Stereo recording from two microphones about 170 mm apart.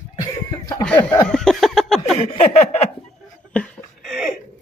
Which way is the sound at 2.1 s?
35° left (ahead or behind).